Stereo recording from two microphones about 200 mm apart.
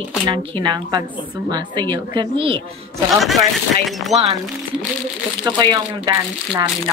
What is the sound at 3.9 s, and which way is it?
Speech, centre (ahead or behind).